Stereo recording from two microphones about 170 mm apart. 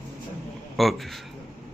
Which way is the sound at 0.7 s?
Centre (ahead or behind).